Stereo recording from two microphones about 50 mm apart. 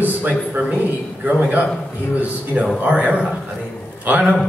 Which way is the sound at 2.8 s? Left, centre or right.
Right.